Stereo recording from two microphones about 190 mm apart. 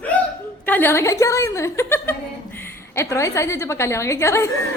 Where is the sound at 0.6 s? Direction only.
10° left (ahead or behind).